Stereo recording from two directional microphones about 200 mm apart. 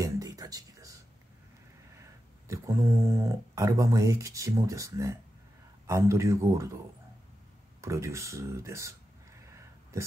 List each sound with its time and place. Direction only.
0.0 s a sound: 20° right (ahead or behind)
2.4 s speech: 15° right (ahead or behind)
7.8 s speech: 15° right (ahead or behind)